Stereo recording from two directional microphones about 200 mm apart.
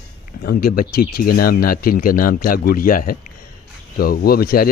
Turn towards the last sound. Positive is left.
turn(degrees=50)  # may be behind; listen again after turning